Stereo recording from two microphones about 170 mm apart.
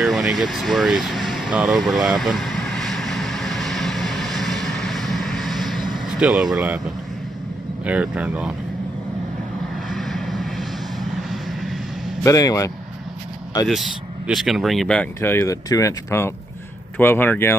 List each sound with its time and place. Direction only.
0.0 s vehicle: centre (ahead or behind)
7.8 s speech: 5° right (ahead or behind)
9.8 s vehicle: centre (ahead or behind)
12.2 s speech: 20° left (ahead or behind)
13.7 s speech: centre (ahead or behind)